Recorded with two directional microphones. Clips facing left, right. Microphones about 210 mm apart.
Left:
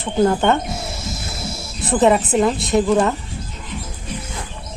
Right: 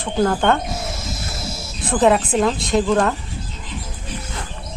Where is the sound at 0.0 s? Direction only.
5° left (ahead or behind).